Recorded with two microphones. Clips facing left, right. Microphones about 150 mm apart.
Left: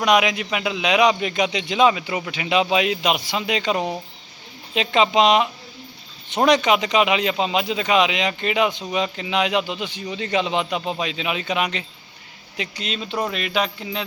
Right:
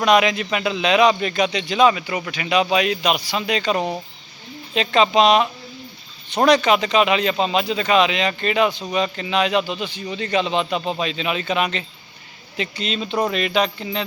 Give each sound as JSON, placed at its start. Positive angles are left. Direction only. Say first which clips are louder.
{"t": 0.0, "sound": "a man's voice", "louder": "right 2 dB", "side_deg": 10}